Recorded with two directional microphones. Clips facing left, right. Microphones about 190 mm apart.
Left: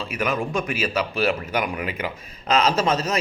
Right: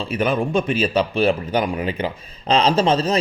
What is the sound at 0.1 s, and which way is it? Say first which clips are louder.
A man's voice: right 5 dB; 30° right (ahead or behind).